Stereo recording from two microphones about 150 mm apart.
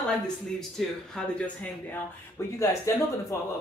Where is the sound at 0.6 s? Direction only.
5° left (ahead or behind).